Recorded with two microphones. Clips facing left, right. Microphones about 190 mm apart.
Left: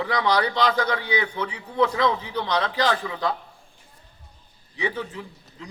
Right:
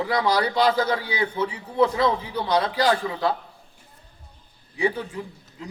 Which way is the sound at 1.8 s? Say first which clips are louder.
Right 1 dB; 30° right (ahead or behind).